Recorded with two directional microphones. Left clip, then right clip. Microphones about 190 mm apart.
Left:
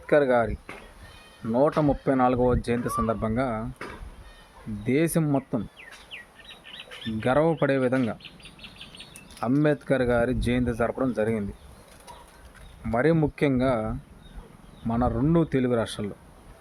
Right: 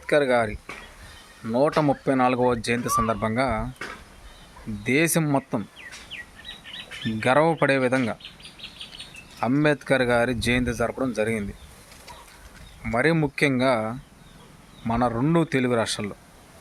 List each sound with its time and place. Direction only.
0.0 s speech: centre (ahead or behind)
4.9 s speech: 5° left (ahead or behind)
6.1 s chirp: 55° left (ahead or behind)
7.2 s speech: 5° left (ahead or behind)
9.4 s speech: 5° left (ahead or behind)
12.8 s speech: 5° left (ahead or behind)